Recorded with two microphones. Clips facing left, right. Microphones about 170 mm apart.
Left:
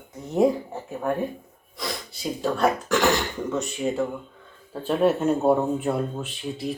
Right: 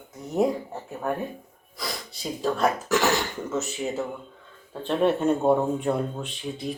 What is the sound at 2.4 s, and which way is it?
Speech, centre (ahead or behind).